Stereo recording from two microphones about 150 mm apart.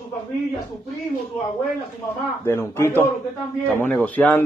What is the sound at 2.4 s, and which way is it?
A man's voice, 15° left (ahead or behind).